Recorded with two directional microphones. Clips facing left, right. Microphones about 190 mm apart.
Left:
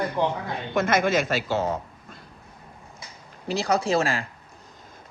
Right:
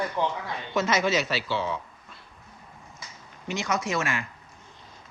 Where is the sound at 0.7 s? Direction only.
55° left (ahead or behind).